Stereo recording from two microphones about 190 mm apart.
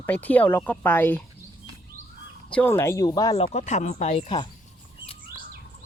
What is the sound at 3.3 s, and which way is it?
Speech, 35° left (ahead or behind).